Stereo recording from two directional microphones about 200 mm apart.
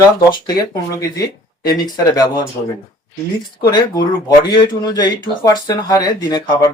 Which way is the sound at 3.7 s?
20° left (ahead or behind).